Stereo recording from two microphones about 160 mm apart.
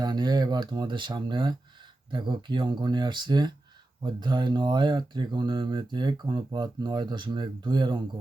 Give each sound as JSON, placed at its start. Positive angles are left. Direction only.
{"t": 0.0, "sound": "speech", "side_deg": -25}